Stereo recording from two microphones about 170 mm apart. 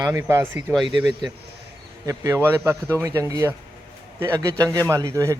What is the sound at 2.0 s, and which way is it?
Speech, 20° right (ahead or behind).